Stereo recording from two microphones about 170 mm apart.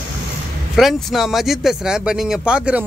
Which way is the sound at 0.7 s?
Centre (ahead or behind).